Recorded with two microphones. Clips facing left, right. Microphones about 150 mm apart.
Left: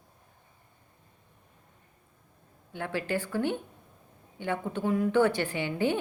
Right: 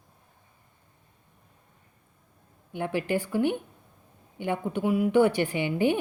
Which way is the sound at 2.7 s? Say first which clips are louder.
Right 4 dB; 15° right (ahead or behind).